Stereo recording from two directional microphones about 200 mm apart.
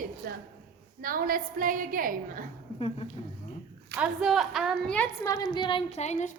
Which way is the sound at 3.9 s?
5° right (ahead or behind).